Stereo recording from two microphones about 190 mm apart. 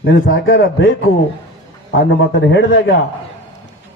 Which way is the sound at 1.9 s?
70° left (ahead or behind).